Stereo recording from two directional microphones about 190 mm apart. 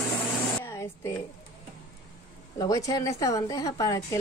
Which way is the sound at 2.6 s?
20° left (ahead or behind).